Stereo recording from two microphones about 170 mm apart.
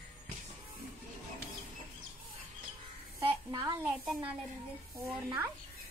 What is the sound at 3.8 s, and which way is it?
A woman's voice, 5° right (ahead or behind).